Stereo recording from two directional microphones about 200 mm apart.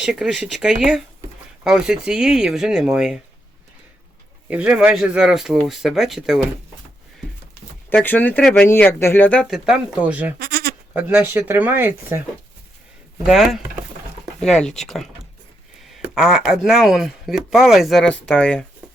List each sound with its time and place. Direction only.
0.0 s speech: centre (ahead or behind)
4.4 s speech: 5° right (ahead or behind)
7.9 s speech: 10° left (ahead or behind); by 10.3 s 5° right (ahead or behind)
10.4 s bleat: 50° right (ahead or behind)
10.9 s speech: 10° right (ahead or behind)
13.2 s speech: centre (ahead or behind)